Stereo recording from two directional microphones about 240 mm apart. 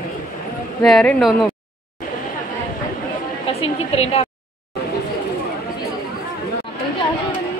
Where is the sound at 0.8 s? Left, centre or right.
Centre.